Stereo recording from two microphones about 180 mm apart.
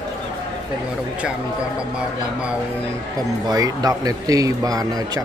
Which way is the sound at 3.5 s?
20° right (ahead or behind).